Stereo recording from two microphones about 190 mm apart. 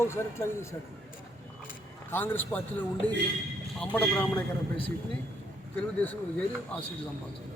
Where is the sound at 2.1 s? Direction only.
10° left (ahead or behind).